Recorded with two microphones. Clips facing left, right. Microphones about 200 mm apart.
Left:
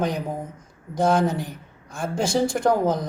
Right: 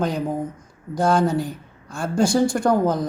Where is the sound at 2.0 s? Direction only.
20° left (ahead or behind).